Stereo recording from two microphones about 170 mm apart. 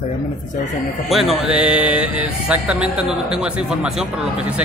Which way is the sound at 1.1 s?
Centre (ahead or behind).